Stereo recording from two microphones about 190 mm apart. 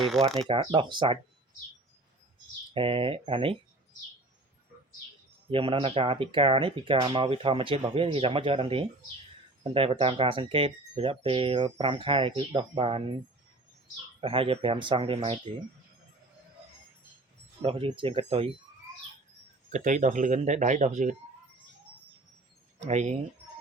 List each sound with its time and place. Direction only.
0.3 s speech: 30° right (ahead or behind)
2.7 s speech: 30° right (ahead or behind)
5.5 s speech: 30° right (ahead or behind)
14.2 s speech: 30° right (ahead or behind)
17.6 s speech: 30° right (ahead or behind)
19.7 s speech: 40° right (ahead or behind)
22.8 s speech: 35° right (ahead or behind)